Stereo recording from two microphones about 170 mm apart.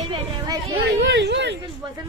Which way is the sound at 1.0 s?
90° right.